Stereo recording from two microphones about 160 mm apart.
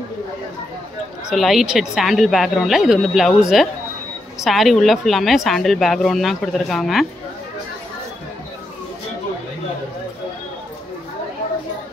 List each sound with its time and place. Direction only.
1.3 s a woman's voice: centre (ahead or behind)